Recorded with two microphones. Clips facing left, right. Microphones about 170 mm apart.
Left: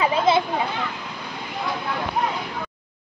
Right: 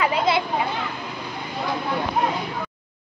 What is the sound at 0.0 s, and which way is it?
Children playing, 25° left (ahead or behind).